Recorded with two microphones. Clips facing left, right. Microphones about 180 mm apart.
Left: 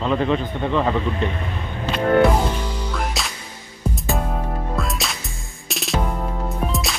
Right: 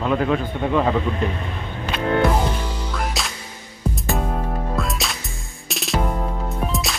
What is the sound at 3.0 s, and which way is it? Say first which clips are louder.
Music: right 1 dB; centre (ahead or behind).